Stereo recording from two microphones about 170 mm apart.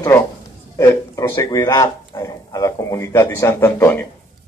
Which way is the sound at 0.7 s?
15° left (ahead or behind).